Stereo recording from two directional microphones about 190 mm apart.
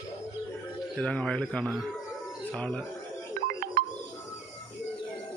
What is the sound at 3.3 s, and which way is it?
Music, 50° right (ahead or behind).